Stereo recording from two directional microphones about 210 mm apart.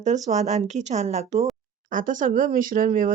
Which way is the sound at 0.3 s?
30° right (ahead or behind).